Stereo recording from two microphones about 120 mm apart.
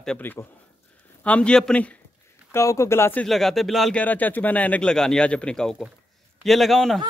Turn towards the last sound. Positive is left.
turn(degrees=0)  # may be behind; listen again after turning